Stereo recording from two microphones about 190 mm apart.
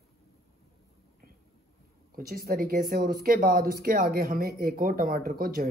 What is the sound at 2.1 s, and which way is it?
Speech, 50° right (ahead or behind).